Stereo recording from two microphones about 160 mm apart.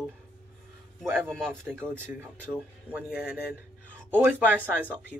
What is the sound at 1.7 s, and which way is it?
Speech, 15° right (ahead or behind).